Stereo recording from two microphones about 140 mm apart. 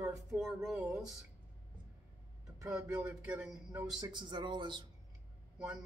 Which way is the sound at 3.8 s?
30° right (ahead or behind).